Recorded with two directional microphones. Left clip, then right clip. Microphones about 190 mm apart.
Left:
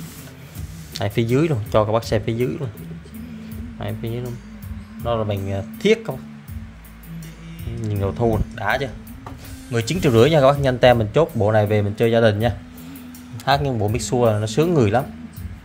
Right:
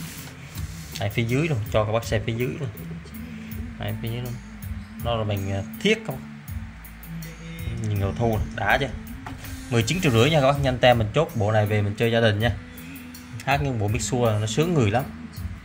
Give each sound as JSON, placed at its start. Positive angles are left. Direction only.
{"t": 0.9, "sound": "speech", "side_deg": 30}
{"t": 3.8, "sound": "speech", "side_deg": 25}
{"t": 7.9, "sound": "speech", "side_deg": 20}